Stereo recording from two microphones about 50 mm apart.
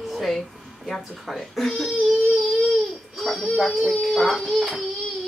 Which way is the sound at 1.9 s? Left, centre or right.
Centre.